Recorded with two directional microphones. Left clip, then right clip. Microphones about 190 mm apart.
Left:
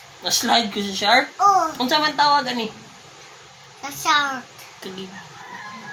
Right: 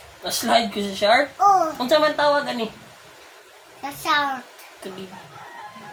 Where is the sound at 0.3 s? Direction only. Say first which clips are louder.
Left 1 dB; 15° right (ahead or behind).